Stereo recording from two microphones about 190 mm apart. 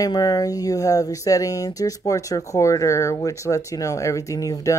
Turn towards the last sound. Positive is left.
turn(degrees=15)  # may be behind; listen again after turning